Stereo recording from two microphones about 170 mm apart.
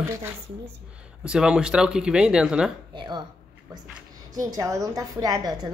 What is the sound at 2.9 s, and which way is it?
Speech, 30° right (ahead or behind).